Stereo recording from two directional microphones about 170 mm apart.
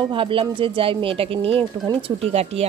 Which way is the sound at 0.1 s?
30° right (ahead or behind).